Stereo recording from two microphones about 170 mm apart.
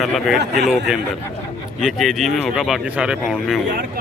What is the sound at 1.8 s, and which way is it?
Speech, centre (ahead or behind).